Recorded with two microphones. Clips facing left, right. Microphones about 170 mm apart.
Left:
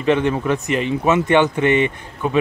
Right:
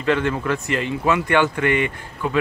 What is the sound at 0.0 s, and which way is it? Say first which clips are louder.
Speech: left 3 dB; 20° left (ahead or behind).